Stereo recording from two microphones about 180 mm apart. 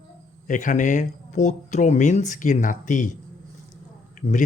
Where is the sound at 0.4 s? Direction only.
45° left (ahead or behind).